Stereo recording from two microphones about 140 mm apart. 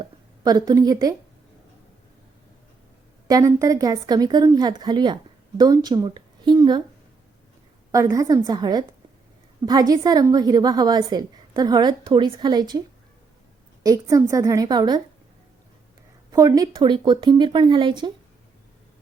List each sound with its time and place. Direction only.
0.0 s a woman's voice: 30° right (ahead or behind)
3.2 s a woman's voice: 25° right (ahead or behind)
7.9 s a woman's voice: 25° right (ahead or behind)
13.8 s a woman's voice: 25° right (ahead or behind)
16.3 s speech: 25° right (ahead or behind)